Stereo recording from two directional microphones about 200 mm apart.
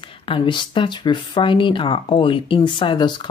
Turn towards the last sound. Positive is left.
turn(degrees=20)  # may be behind; listen again after turning